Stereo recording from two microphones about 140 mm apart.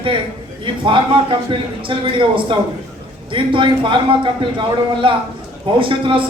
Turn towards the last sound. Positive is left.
turn(degrees=-35)  # may be behind; listen again after turning